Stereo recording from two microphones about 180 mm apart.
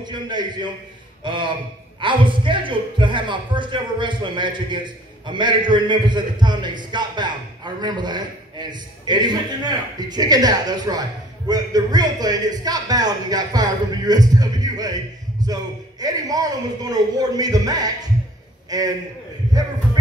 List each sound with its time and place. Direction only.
0.0 s a woman's voice: 25° right (ahead or behind)